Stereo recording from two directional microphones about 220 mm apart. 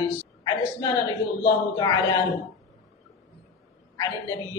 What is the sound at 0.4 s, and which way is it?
A man's voice, 15° left (ahead or behind).